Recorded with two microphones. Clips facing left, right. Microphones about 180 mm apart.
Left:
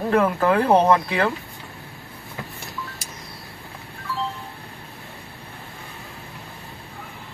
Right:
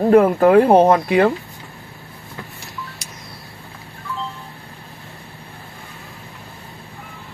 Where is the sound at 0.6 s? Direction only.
25° right (ahead or behind).